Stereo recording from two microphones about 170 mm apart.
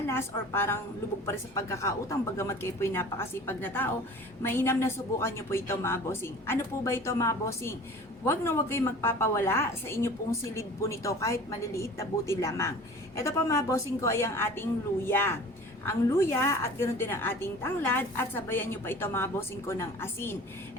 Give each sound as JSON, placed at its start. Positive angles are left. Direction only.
{"t": 0.1, "sound": "a woman's voice", "side_deg": 15}